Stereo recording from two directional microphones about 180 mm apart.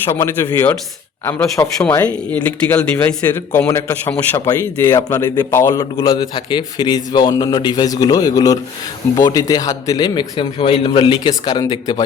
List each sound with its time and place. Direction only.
0.1 s speech: 15° left (ahead or behind)
4.4 s speech: 20° left (ahead or behind)
5.8 s a man's voice: 30° left (ahead or behind)